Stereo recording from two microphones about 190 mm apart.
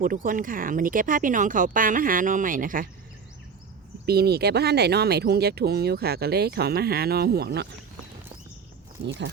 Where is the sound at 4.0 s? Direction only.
55° right (ahead or behind).